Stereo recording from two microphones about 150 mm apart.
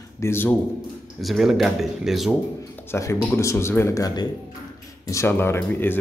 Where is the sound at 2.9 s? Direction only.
20° left (ahead or behind).